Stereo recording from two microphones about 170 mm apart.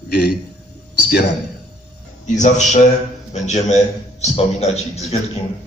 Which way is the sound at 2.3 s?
45° left (ahead or behind).